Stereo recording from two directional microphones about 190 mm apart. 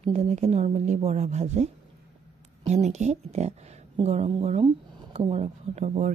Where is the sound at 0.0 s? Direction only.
35° right (ahead or behind).